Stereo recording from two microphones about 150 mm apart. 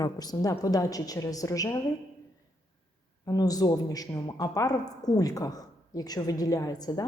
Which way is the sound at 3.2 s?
25° left (ahead or behind).